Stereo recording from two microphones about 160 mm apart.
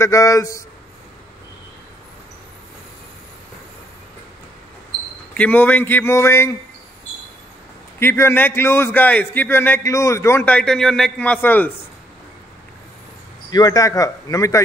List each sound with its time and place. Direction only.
0.0 s speech: 20° left (ahead or behind)
5.3 s a man's voice: 10° left (ahead or behind)
8.0 s a man's voice: 15° left (ahead or behind)
13.5 s speech: 25° left (ahead or behind)